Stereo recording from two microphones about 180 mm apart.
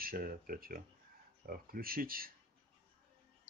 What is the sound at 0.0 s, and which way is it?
Speech, 55° right (ahead or behind).